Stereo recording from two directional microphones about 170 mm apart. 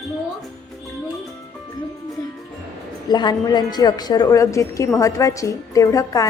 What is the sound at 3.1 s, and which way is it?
A woman's voice, 25° left (ahead or behind).